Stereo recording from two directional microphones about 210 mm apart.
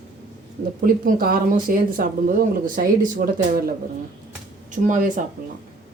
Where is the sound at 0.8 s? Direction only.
40° right (ahead or behind).